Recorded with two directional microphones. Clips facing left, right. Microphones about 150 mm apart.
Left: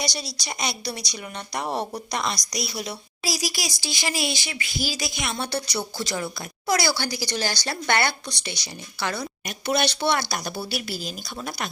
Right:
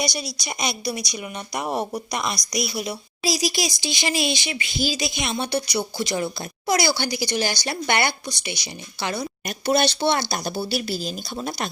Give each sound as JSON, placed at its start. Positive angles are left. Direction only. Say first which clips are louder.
{"t": 0.0, "sound": "a woman's voice", "louder": "right 3 dB", "side_deg": -15}
{"t": 9.6, "sound": "a woman's voice", "louder": "right 3 dB", "side_deg": -35}